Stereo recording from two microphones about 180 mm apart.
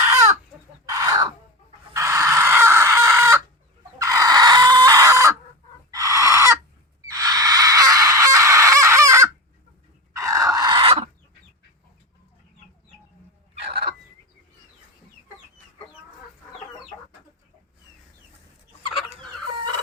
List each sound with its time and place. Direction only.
0.0 s chicken: 15° right (ahead or behind)
0.9 s a sound: 20° right (ahead or behind)
1.9 s chicken: 15° right (ahead or behind)
7.1 s crow: 20° right (ahead or behind)
10.1 s chicken: 15° right (ahead or behind); by 11.1 s 30° right (ahead or behind)